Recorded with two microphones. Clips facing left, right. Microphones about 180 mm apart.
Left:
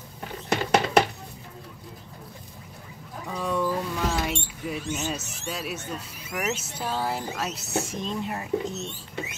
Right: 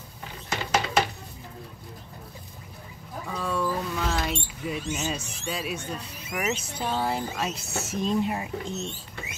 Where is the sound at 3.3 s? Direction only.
20° left (ahead or behind).